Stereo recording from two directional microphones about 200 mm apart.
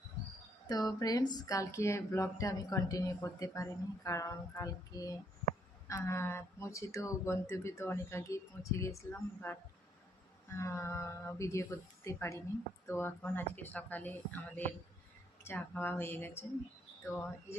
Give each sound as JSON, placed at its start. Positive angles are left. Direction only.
{"t": 0.7, "sound": "speech", "side_deg": 20}
{"t": 10.6, "sound": "speech", "side_deg": 15}